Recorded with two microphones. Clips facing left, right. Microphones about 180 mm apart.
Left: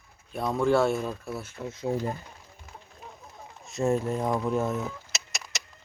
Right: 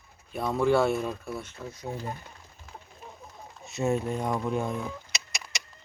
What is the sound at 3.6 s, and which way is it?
Speech, centre (ahead or behind).